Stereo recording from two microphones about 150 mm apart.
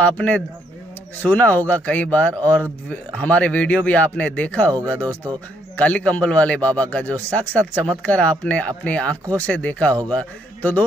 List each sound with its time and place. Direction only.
0.0 s a man's voice: 10° left (ahead or behind)
4.9 s speech: 20° right (ahead or behind)
5.8 s a man's voice: 10° left (ahead or behind)